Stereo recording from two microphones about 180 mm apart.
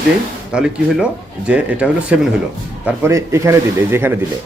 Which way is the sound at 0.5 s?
5° right (ahead or behind).